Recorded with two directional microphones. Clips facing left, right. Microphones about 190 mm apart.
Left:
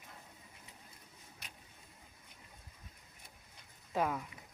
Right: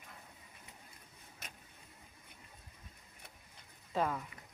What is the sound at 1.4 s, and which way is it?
Vehicle, 45° right (ahead or behind).